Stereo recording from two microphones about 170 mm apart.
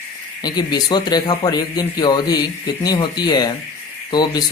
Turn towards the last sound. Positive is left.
turn(degrees=25)  # may be behind; listen again after turning